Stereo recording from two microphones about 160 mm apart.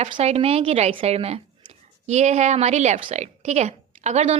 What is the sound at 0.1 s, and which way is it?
A woman's voice, 40° right (ahead or behind).